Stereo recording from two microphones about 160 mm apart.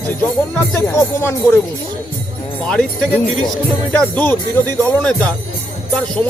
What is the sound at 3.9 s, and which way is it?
Speech, 10° left (ahead or behind).